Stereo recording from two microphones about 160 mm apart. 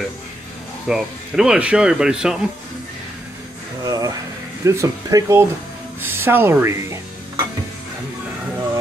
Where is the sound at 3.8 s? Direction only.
25° right (ahead or behind).